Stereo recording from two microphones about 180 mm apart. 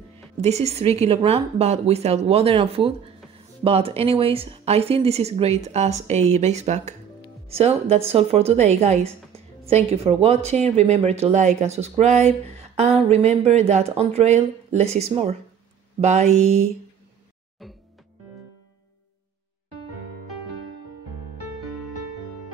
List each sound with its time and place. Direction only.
0.4 s a woman's voice: 35° right (ahead or behind)
21.5 s music: centre (ahead or behind)